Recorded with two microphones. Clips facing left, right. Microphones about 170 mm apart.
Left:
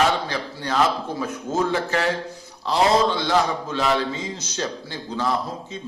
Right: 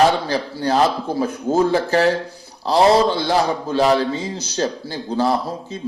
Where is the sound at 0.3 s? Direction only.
35° right (ahead or behind).